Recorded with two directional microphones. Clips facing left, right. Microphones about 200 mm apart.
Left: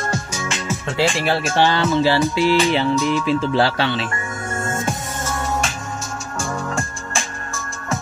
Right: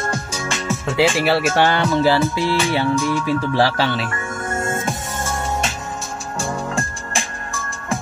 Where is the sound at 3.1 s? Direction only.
20° left (ahead or behind).